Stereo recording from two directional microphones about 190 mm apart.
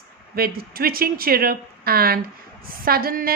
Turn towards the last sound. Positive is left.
turn(degrees=-50)  # may be behind; listen again after turning